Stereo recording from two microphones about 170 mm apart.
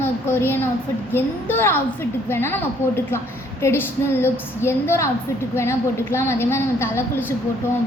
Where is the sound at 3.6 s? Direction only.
15° left (ahead or behind).